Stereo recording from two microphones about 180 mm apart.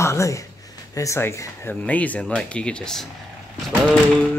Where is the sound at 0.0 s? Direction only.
15° left (ahead or behind).